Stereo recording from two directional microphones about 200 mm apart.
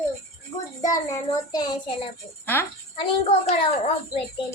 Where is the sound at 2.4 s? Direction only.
10° left (ahead or behind).